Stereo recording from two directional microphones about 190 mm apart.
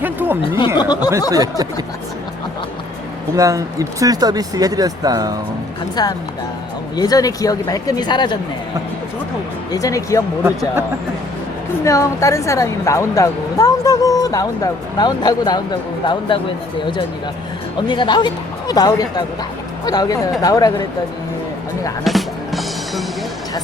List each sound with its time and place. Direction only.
0.0 s speech: 10° right (ahead or behind)
0.8 s speech: 20° left (ahead or behind)
1.3 s speech: 20° right (ahead or behind)
3.3 s speech: 15° right (ahead or behind)
6.0 s speech: 20° left (ahead or behind)
9.7 s a woman's voice: 15° left (ahead or behind)
11.8 s a woman's voice: 15° left (ahead or behind)
17.7 s speech: 25° left (ahead or behind)
22.0 s music: centre (ahead or behind)